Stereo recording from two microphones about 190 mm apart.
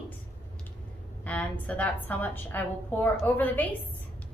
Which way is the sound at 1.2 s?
10° left (ahead or behind).